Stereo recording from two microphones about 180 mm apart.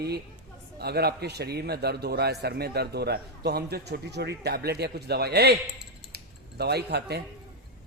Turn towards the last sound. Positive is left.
turn(degrees=-65)  # may be behind; listen again after turning